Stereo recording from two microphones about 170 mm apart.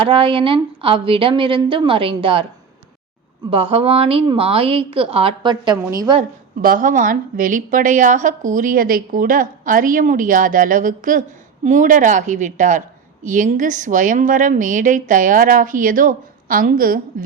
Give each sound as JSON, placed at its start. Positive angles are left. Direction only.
{"t": 0.0, "sound": "a woman's voice", "side_deg": -30}
{"t": 3.5, "sound": "a woman's voice", "side_deg": -35}
{"t": 6.6, "sound": "a woman's voice", "side_deg": -55}